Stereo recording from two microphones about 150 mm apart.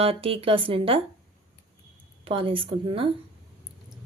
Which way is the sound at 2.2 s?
35° right (ahead or behind).